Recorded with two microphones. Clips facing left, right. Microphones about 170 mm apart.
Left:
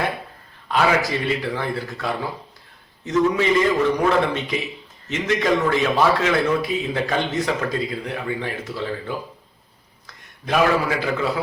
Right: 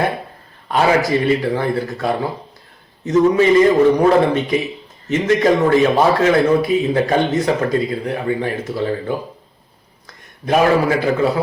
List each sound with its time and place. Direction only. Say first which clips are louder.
0.8 s a man's voice: right 5 dB; 40° right (ahead or behind)
4.4 s speech: right 8 dB; 50° right (ahead or behind)
5.2 s a man's voice: right 5 dB; 35° right (ahead or behind)
6.6 s speech: right 8 dB; 45° right (ahead or behind)
10.4 s a man's voice: right 5 dB; 40° right (ahead or behind)